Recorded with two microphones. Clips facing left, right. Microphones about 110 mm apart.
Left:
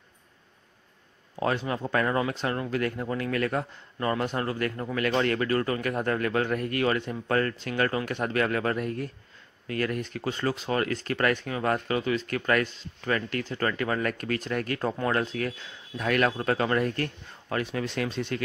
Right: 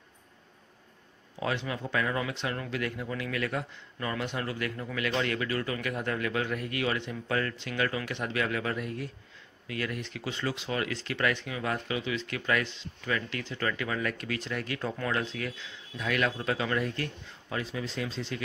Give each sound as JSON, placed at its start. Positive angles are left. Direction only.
{"t": 1.4, "sound": "speech", "side_deg": 40}